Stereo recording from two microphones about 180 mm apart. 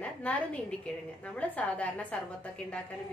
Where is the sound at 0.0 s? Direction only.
5° left (ahead or behind).